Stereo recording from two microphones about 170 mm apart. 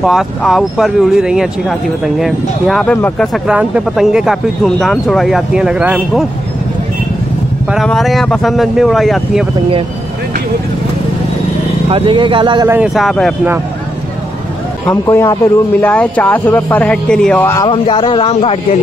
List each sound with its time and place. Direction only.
0.0 s speech: centre (ahead or behind)
3.4 s speech: 5° right (ahead or behind)
7.7 s speech: centre (ahead or behind)
11.9 s speech: 30° right (ahead or behind)
12.6 s speech: 10° right (ahead or behind)
14.9 s speech: 15° left (ahead or behind)
17.6 s speech: 30° left (ahead or behind)